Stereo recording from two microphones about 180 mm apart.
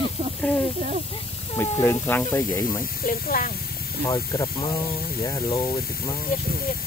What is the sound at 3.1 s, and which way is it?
Speech, 50° left (ahead or behind).